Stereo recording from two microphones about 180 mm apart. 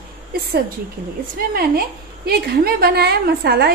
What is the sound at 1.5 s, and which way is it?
A woman's voice, 60° right (ahead or behind).